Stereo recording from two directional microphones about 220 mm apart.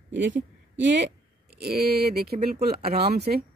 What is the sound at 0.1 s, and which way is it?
A woman's voice, 55° right (ahead or behind).